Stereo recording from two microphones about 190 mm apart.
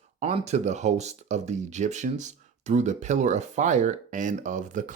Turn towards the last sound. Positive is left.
turn(degrees=-40)  # may be behind; listen again after turning